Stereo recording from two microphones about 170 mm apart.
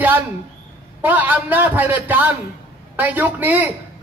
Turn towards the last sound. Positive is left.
turn(degrees=-10)  # may be behind; listen again after turning